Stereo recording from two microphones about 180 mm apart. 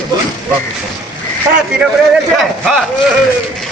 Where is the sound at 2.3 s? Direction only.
Centre (ahead or behind).